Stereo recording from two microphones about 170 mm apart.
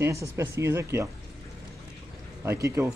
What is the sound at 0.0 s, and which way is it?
Speech, 15° right (ahead or behind).